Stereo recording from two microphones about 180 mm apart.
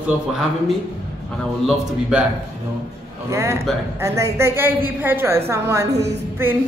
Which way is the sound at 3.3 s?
15° right (ahead or behind).